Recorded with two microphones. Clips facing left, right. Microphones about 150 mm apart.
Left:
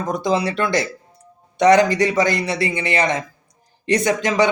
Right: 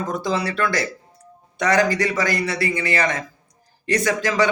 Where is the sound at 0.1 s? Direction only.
15° left (ahead or behind).